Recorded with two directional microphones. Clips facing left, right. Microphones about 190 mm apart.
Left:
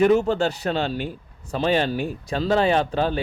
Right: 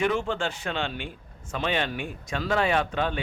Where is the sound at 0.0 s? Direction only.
40° left (ahead or behind).